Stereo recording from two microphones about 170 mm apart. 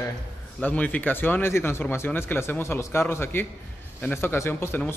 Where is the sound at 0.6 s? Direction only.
10° left (ahead or behind).